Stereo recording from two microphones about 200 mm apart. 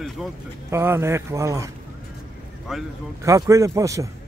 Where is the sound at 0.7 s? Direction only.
10° right (ahead or behind).